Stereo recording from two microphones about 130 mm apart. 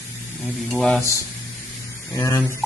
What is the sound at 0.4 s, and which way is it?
Speech, centre (ahead or behind).